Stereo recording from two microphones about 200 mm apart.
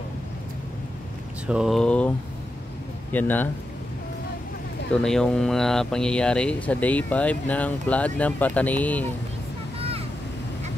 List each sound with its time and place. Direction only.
1.5 s speech: centre (ahead or behind)
5.0 s speech: 5° left (ahead or behind)
9.8 s vehicle: 30° right (ahead or behind)